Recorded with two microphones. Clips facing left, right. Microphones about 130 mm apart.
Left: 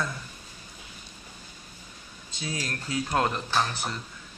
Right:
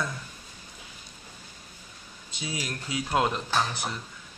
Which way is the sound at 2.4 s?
15° right (ahead or behind).